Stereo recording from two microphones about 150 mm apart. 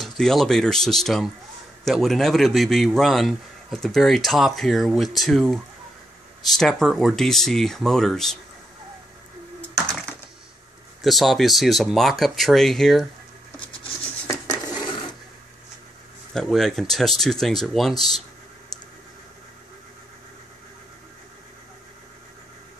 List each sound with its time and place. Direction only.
0.0 s a man's voice: centre (ahead or behind)
11.0 s a man's voice: centre (ahead or behind)
14.2 s a sound: 25° left (ahead or behind)
16.3 s a man's voice: centre (ahead or behind)